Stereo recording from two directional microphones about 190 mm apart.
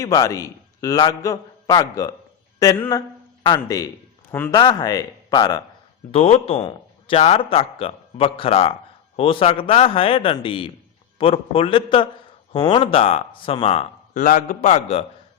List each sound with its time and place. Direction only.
0.0 s a man's voice: 15° left (ahead or behind)
4.5 s speech: 20° left (ahead or behind)
6.1 s speech: 30° left (ahead or behind)